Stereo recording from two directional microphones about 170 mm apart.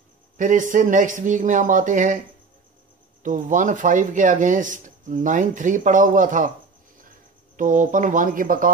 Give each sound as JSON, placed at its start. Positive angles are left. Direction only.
{"t": 0.4, "sound": "speech", "side_deg": -50}